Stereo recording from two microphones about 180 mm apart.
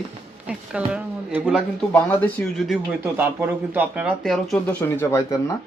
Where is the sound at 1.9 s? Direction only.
5° left (ahead or behind).